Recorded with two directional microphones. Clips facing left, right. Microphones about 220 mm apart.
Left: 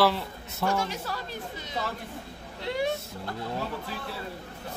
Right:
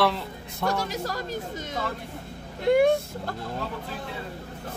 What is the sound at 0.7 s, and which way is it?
Speech, 40° right (ahead or behind).